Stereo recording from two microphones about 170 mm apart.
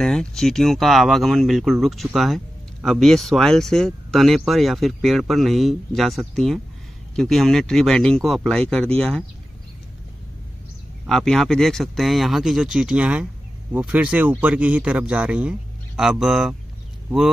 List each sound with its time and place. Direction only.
0.0 s speech: 5° left (ahead or behind)
11.1 s speech: centre (ahead or behind)